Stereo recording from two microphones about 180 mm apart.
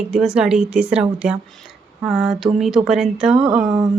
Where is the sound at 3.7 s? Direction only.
20° right (ahead or behind).